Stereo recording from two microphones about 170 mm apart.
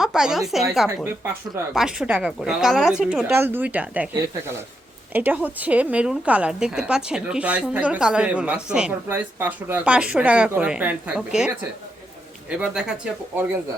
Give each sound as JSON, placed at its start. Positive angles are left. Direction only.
{"t": 0.0, "sound": "a woman's voice", "side_deg": -5}